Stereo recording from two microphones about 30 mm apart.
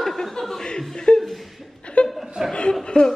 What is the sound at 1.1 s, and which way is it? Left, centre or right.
Speech, left.